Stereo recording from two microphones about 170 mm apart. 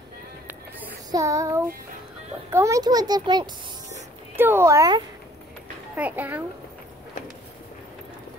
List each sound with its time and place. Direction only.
1.1 s a child's voice: 20° right (ahead or behind)
4.4 s speech: 15° right (ahead or behind)
5.9 s speech: 10° right (ahead or behind)